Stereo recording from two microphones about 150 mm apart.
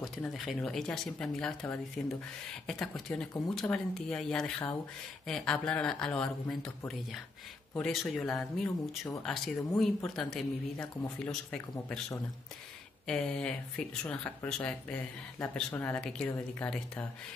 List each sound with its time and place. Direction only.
0.3 s speech: centre (ahead or behind)
7.7 s speech: 5° left (ahead or behind)
8.6 s speech: 15° left (ahead or behind)
9.7 s speech: centre (ahead or behind)
13.0 s speech: 5° left (ahead or behind)